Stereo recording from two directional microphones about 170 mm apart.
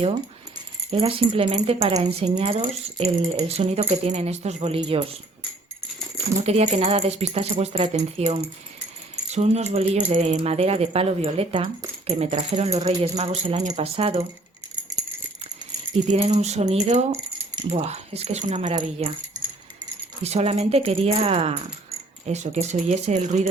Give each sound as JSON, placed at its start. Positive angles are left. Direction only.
{"t": 0.9, "sound": "speech", "side_deg": -35}
{"t": 4.8, "sound": "speech", "side_deg": -25}
{"t": 6.4, "sound": "speech", "side_deg": -40}
{"t": 16.0, "sound": "speech", "side_deg": -40}
{"t": 20.2, "sound": "speech", "side_deg": -40}